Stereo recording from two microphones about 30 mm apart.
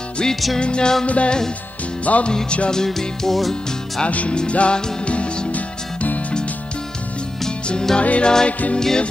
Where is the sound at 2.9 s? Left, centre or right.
Centre.